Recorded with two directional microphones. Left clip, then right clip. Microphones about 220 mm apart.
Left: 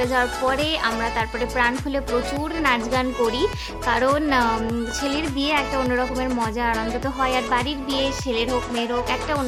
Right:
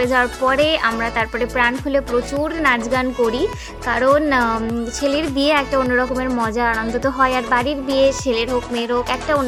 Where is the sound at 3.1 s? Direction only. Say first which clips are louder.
Right 3 dB; centre (ahead or behind).